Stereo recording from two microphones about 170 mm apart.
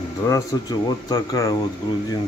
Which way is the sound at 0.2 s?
20° left (ahead or behind).